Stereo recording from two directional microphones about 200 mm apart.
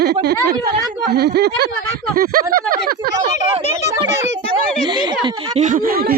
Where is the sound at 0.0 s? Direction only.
55° right (ahead or behind).